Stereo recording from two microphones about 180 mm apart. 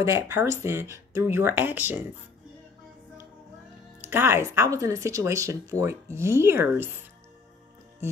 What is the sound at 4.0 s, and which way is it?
Speech, 10° right (ahead or behind).